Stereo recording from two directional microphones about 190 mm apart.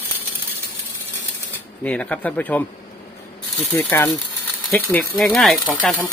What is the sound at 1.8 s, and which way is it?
Speech, 5° left (ahead or behind).